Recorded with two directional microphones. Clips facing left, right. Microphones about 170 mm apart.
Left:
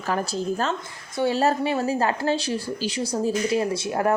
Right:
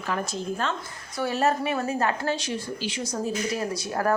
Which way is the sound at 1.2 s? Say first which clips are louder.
Left 3 dB; 30° left (ahead or behind).